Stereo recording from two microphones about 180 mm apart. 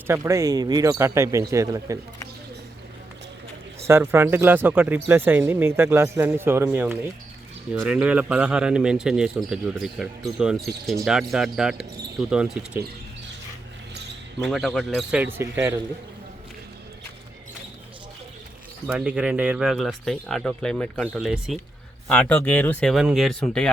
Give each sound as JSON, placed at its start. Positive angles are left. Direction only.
{"t": 0.1, "sound": "speech", "side_deg": -15}
{"t": 3.8, "sound": "speech", "side_deg": -15}
{"t": 14.4, "sound": "speech", "side_deg": 0}
{"t": 18.9, "sound": "speech", "side_deg": -5}